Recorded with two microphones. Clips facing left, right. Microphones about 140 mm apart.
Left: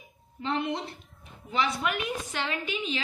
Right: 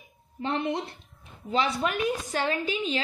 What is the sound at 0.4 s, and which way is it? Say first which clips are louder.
A woman's voice: right 2 dB; 40° right (ahead or behind).